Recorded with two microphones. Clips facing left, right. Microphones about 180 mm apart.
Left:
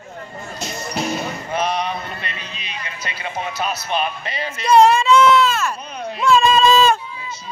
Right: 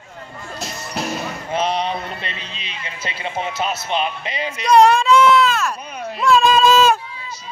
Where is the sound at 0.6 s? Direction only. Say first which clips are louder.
Left 2 dB; centre (ahead or behind).